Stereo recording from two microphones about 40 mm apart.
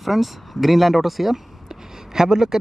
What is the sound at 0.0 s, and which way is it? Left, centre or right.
Speech, centre.